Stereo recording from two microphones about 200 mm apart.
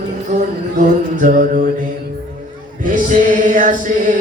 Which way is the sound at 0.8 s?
40° right (ahead or behind).